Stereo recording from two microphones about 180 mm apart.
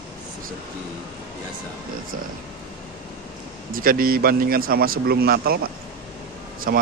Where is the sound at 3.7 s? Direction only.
50° right (ahead or behind).